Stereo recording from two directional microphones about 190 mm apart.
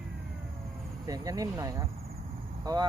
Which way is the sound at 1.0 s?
20° right (ahead or behind).